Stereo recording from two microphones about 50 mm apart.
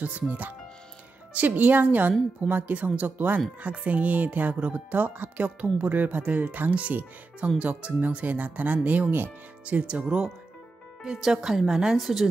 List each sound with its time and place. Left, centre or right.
0.3 s a woman's voice: right; by 12.3 s centre